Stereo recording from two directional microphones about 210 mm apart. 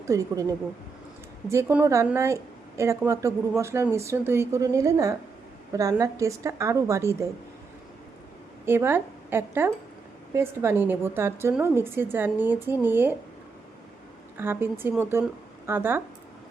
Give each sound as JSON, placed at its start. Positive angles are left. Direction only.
{"t": 0.1, "sound": "speech", "side_deg": -15}
{"t": 1.5, "sound": "speech", "side_deg": -10}
{"t": 8.6, "sound": "a woman's voice", "side_deg": -10}
{"t": 14.3, "sound": "speech", "side_deg": -10}